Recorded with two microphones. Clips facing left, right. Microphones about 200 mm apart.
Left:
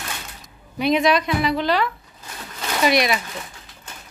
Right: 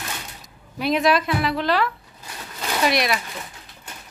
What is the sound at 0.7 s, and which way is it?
A woman's voice, centre (ahead or behind).